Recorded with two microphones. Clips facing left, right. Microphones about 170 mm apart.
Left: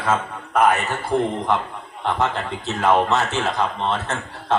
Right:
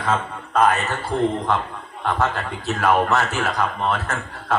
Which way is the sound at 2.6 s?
20° left (ahead or behind).